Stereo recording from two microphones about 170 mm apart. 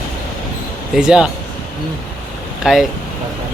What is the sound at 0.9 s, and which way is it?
Speech, 5° right (ahead or behind).